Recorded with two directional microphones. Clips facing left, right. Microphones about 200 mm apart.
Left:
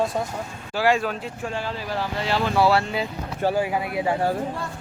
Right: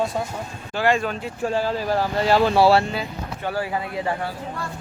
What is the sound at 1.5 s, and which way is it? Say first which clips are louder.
Speech: right 8 dB; 40° right (ahead or behind).